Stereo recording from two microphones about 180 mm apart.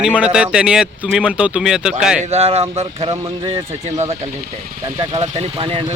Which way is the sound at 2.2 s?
35° right (ahead or behind).